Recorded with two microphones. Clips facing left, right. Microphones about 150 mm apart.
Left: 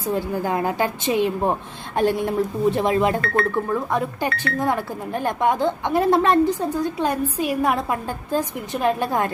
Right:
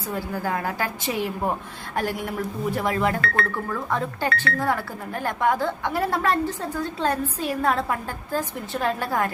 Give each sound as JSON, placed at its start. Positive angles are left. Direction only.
{"t": 0.1, "sound": "speech", "side_deg": 20}